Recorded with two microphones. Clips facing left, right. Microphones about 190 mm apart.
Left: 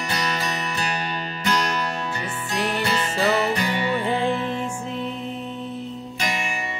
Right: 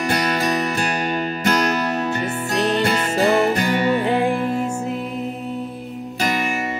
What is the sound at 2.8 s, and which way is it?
Music, 50° right (ahead or behind).